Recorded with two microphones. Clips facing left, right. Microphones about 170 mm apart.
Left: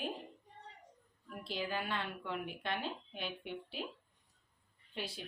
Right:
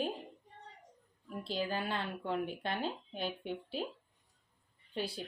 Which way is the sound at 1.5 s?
35° right (ahead or behind).